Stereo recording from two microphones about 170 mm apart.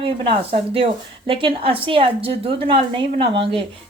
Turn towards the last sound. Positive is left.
turn(degrees=-30)  # may be behind; listen again after turning